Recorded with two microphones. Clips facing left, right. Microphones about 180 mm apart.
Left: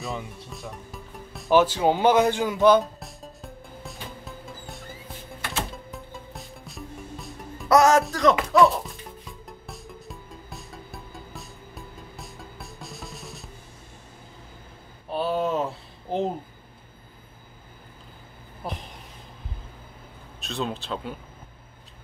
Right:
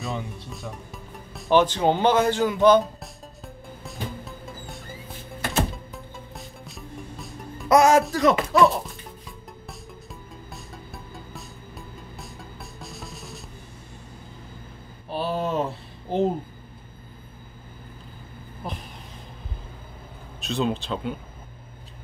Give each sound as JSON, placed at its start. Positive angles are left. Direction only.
{"t": 0.0, "sound": "music", "side_deg": 0}
{"t": 5.4, "sound": "music", "side_deg": -40}
{"t": 5.9, "sound": "music", "side_deg": 0}
{"t": 7.6, "sound": "music", "side_deg": -10}
{"t": 8.0, "sound": "speech", "side_deg": -5}
{"t": 9.5, "sound": "music", "side_deg": 0}
{"t": 15.0, "sound": "a sound", "side_deg": 0}
{"t": 18.6, "sound": "a sound", "side_deg": 5}
{"t": 20.3, "sound": "speech", "side_deg": 0}